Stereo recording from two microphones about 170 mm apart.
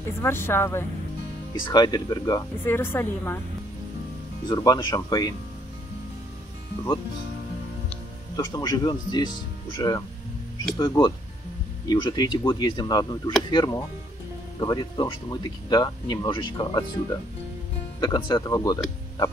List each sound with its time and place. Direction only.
0.0 s speech: 15° left (ahead or behind)
4.5 s speech: 25° left (ahead or behind)
8.4 s speech: 20° left (ahead or behind)